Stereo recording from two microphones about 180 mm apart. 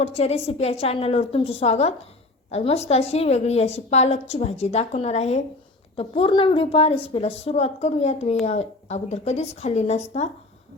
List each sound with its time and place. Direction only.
0.0 s a woman's voice: 35° left (ahead or behind)